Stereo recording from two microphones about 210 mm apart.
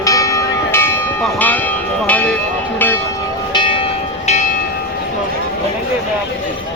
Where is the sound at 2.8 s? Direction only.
10° left (ahead or behind).